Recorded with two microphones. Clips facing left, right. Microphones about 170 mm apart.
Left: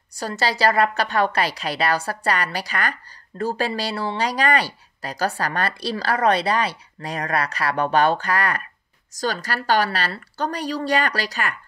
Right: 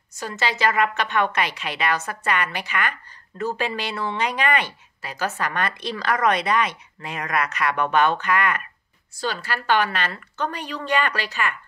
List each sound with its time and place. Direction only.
0.1 s a woman's voice: 35° left (ahead or behind)